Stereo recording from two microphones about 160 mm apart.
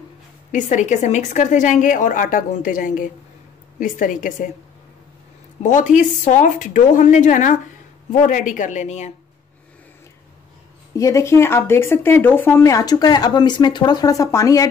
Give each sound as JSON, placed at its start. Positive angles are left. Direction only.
{"t": 0.5, "sound": "a woman's voice", "side_deg": 50}
{"t": 5.6, "sound": "a woman's voice", "side_deg": 50}
{"t": 11.0, "sound": "speech", "side_deg": 20}